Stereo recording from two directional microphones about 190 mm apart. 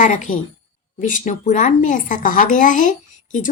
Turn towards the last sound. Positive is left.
turn(degrees=40)  # may be behind; listen again after turning